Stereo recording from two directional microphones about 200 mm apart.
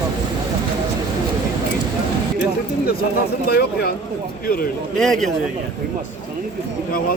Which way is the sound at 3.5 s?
50° left (ahead or behind).